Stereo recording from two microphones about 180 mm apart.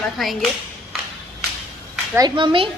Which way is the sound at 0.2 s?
Centre (ahead or behind).